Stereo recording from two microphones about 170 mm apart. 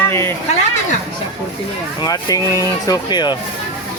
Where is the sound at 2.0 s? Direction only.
20° left (ahead or behind).